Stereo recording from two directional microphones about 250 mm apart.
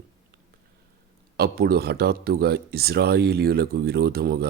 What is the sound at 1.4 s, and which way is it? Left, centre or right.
Speech, right.